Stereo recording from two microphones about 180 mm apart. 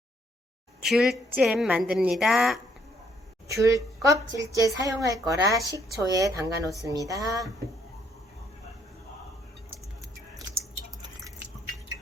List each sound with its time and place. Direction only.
0.8 s a woman's voice: centre (ahead or behind)
3.5 s a woman's voice: 20° right (ahead or behind)